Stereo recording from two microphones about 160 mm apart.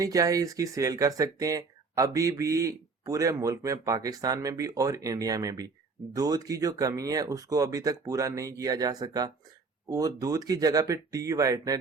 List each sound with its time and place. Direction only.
0.0 s speech: 20° right (ahead or behind)